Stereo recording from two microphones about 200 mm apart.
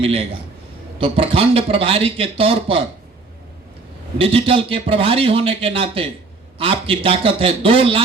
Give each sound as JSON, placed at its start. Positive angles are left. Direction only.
{"t": 0.0, "sound": "a man's voice", "side_deg": -30}
{"t": 4.2, "sound": "a man's voice", "side_deg": -30}